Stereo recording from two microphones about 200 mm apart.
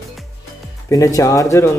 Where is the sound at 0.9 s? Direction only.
15° left (ahead or behind).